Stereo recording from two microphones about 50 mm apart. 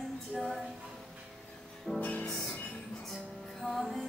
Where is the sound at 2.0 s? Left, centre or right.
Left.